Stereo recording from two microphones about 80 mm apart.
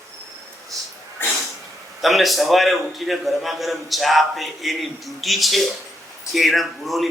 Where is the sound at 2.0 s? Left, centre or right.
Centre.